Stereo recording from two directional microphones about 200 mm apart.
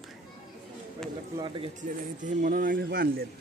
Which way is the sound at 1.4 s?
25° right (ahead or behind).